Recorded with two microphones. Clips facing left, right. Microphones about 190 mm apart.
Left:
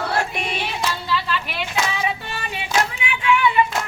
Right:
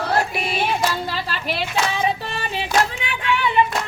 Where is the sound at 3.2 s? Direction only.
35° right (ahead or behind).